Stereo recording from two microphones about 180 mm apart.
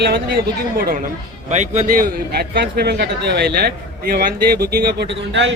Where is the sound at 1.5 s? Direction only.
40° right (ahead or behind).